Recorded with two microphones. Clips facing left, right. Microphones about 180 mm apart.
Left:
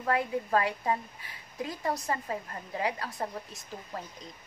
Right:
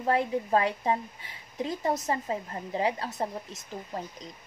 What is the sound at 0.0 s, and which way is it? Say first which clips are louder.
A woman's voice: right 3 dB; 25° right (ahead or behind).